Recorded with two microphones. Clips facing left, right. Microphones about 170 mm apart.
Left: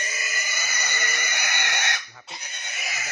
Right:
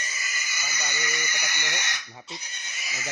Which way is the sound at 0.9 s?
60° left (ahead or behind).